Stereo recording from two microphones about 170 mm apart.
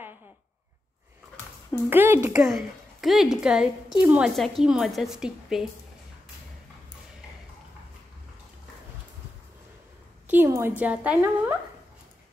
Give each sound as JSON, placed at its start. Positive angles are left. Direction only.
{"t": 1.9, "sound": "a woman's voice", "side_deg": -15}
{"t": 2.4, "sound": "a woman's voice", "side_deg": 0}
{"t": 10.2, "sound": "a woman's voice", "side_deg": -15}